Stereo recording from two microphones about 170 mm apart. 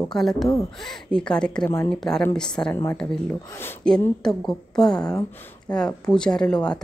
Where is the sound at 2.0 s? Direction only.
5° left (ahead or behind).